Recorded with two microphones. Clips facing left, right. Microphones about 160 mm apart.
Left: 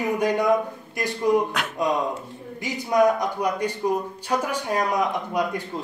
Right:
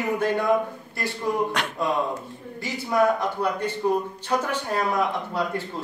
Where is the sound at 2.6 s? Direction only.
15° left (ahead or behind).